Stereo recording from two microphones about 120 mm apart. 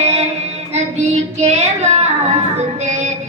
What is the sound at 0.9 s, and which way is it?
Child singing, 70° right (ahead or behind).